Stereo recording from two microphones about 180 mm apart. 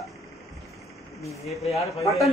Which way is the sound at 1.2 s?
35° left (ahead or behind).